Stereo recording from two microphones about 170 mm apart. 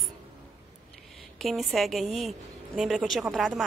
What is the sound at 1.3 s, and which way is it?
A woman's voice, centre (ahead or behind).